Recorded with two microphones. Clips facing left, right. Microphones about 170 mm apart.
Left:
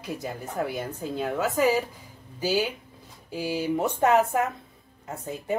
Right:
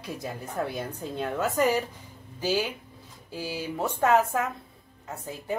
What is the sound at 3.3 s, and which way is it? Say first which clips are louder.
Speech: left 5 dB; 20° left (ahead or behind).